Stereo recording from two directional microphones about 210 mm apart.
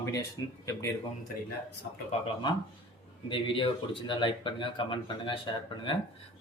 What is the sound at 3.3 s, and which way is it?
Speech, 25° left (ahead or behind).